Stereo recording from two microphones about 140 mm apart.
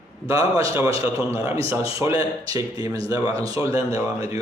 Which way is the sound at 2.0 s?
25° right (ahead or behind).